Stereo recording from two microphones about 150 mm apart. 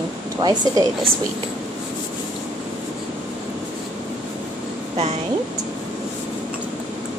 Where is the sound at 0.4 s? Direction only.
25° right (ahead or behind).